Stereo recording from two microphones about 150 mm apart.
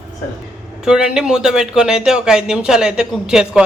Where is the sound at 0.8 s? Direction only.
5° right (ahead or behind).